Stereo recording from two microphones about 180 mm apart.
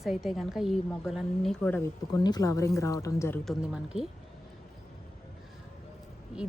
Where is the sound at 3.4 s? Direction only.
Centre (ahead or behind).